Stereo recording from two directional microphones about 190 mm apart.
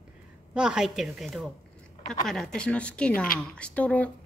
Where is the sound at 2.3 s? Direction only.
Centre (ahead or behind).